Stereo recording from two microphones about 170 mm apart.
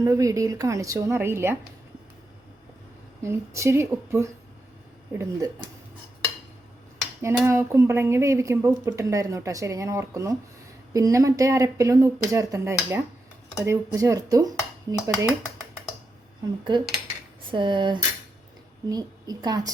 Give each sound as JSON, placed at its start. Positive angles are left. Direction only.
{"t": 0.0, "sound": "speech", "side_deg": -20}
{"t": 3.2, "sound": "speech", "side_deg": -15}
{"t": 7.4, "sound": "speech", "side_deg": -15}
{"t": 16.7, "sound": "speech", "side_deg": -25}